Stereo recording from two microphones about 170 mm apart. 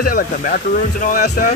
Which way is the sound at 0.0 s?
55° left (ahead or behind).